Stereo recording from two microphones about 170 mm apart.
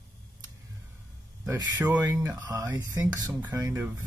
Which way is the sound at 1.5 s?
15° right (ahead or behind).